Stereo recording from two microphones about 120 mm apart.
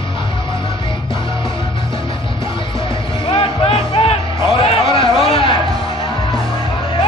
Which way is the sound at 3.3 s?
50° left (ahead or behind).